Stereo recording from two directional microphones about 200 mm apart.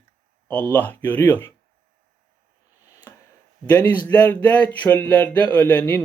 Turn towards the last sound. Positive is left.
turn(degrees=10)  # may be behind; listen again after turning